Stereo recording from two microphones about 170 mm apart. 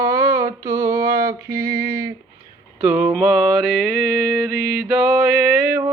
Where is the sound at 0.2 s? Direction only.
15° right (ahead or behind).